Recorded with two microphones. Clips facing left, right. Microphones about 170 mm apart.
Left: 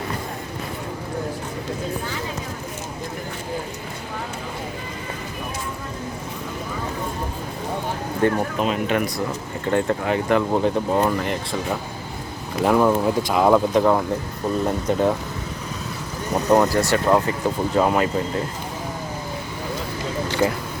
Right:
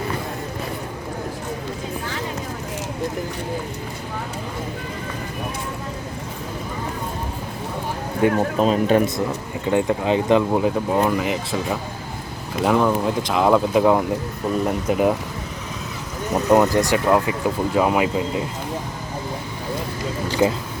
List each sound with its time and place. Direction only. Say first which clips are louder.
8.2 s speech: right 1 dB; 10° right (ahead or behind)
8.5 s speech: right 5 dB; 35° right (ahead or behind)
9.6 s speech: right 2 dB; 15° right (ahead or behind)
10.5 s speech: even; 5° right (ahead or behind)
16.3 s vehicle: right 1 dB; 5° right (ahead or behind)
16.6 s speech: right 1 dB; 15° right (ahead or behind)
20.4 s speech: right 3 dB; 10° right (ahead or behind)